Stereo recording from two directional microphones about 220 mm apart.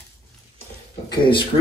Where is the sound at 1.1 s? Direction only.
20° left (ahead or behind).